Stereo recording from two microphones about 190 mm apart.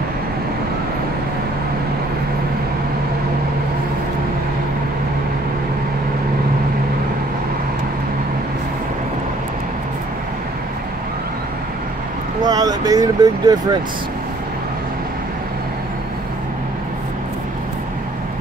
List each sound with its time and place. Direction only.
12.4 s vehicle: 20° right (ahead or behind)